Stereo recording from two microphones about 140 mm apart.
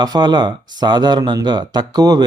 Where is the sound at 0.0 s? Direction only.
30° right (ahead or behind).